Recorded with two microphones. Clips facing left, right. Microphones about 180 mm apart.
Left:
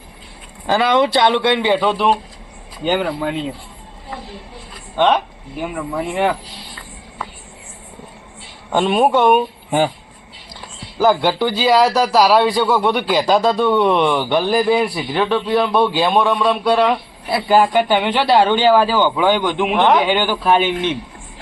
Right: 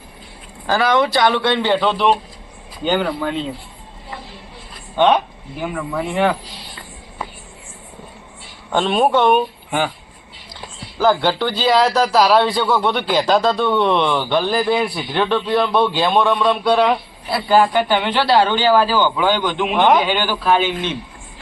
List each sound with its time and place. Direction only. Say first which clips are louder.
0.7 s a man's voice: left 1 dB; 20° left (ahead or behind)
4.9 s a man's voice: right 1 dB; centre (ahead or behind)
8.7 s a man's voice: left 1 dB; 10° left (ahead or behind)
10.9 s a man's voice: left 1 dB; 15° left (ahead or behind)
17.3 s a man's voice: left 1 dB; 15° left (ahead or behind)
19.7 s a man's voice: even; centre (ahead or behind)
20.1 s a man's voice: left 2 dB; 15° left (ahead or behind)